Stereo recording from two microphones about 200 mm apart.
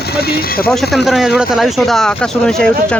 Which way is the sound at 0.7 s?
Centre (ahead or behind).